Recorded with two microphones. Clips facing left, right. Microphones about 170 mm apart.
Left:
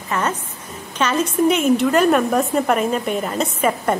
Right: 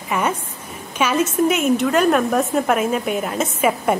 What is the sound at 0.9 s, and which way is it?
A woman's voice, 10° right (ahead or behind).